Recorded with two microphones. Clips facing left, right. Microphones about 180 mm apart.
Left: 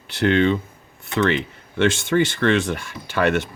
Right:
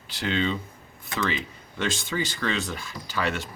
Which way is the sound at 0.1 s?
65° left (ahead or behind).